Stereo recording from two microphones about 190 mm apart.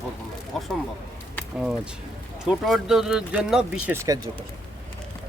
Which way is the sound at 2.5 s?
Centre (ahead or behind).